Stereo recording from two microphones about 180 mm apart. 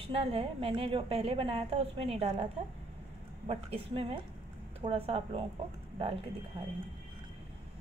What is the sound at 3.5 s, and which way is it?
A woman's voice, 35° right (ahead or behind).